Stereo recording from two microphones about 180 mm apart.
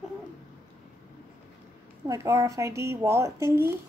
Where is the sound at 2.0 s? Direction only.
15° right (ahead or behind).